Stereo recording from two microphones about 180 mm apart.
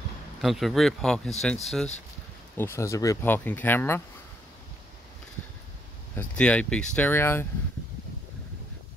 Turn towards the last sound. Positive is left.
turn(degrees=10)  # may be behind; listen again after turning